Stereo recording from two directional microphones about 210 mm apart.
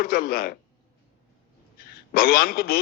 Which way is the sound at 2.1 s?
45° left (ahead or behind).